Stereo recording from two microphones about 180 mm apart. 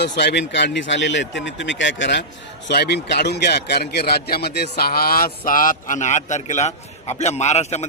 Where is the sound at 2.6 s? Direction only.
70° left (ahead or behind).